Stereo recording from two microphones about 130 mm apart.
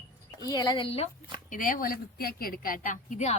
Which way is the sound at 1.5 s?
90° left.